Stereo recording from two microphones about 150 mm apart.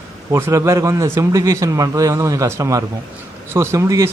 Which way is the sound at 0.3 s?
20° right (ahead or behind).